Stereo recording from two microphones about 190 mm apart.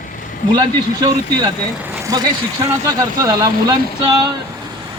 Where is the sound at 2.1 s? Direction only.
20° right (ahead or behind).